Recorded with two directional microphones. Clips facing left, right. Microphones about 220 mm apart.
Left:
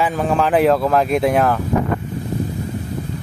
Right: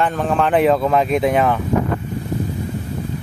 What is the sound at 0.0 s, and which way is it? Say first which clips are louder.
Speech: even; 5° left (ahead or behind).